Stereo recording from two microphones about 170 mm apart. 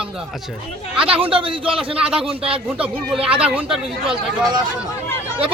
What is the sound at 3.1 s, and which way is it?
Speech, 5° right (ahead or behind).